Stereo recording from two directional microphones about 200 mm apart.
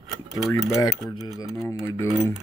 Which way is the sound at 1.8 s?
15° left (ahead or behind).